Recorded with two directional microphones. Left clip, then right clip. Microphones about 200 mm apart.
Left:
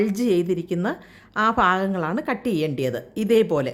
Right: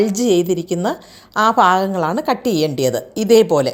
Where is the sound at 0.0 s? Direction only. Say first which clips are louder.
Right 6 dB; centre (ahead or behind).